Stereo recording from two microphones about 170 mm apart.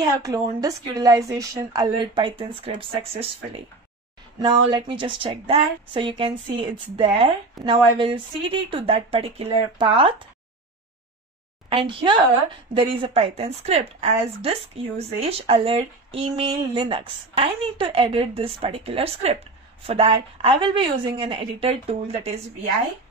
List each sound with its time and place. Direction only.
0.0 s speech: 20° right (ahead or behind)
11.7 s speech: 30° right (ahead or behind)